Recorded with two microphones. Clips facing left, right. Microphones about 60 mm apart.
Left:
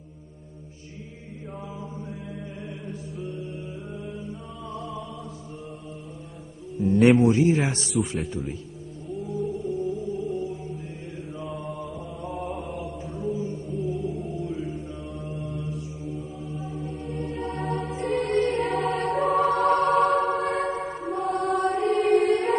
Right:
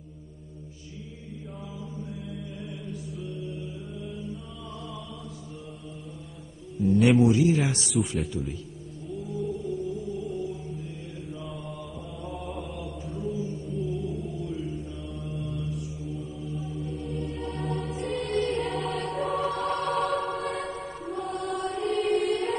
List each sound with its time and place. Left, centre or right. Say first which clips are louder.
3.3 s mantra: left 1 dB; left
6.8 s speech: left 2 dB; left
9.5 s music: left 3 dB; centre
11.3 s mantra: left 6 dB; left
13.1 s mantra: left 3 dB; centre
13.5 s music: left 2 dB; centre
14.4 s mantra: left 2 dB; centre
15.1 s mantra: even; left
16.1 s mantra: left 2 dB; centre
16.6 s music: left 1 dB; left
17.2 s music: left 3 dB; left